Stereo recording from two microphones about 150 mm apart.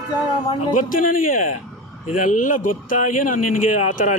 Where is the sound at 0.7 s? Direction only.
65° left (ahead or behind).